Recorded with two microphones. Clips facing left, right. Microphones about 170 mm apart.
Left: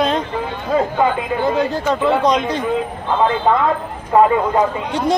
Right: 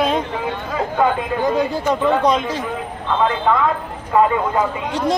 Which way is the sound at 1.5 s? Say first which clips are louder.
Left 1 dB; 10° right (ahead or behind).